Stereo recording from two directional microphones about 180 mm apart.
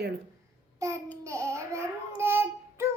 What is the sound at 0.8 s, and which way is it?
Babbling, 15° right (ahead or behind).